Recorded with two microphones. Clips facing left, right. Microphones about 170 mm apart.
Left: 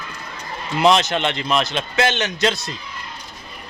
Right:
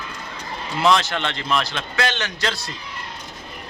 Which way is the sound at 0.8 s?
20° left (ahead or behind).